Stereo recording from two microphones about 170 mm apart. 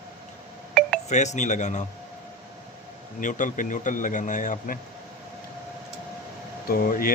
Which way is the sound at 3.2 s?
50° left (ahead or behind).